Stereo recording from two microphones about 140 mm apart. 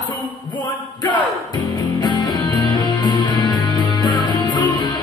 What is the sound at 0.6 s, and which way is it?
Music, 35° left (ahead or behind).